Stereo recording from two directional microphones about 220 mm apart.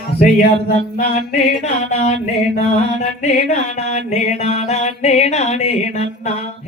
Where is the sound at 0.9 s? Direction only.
40° left (ahead or behind).